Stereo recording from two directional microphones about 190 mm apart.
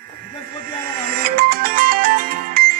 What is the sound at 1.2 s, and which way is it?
Music, 50° right (ahead or behind).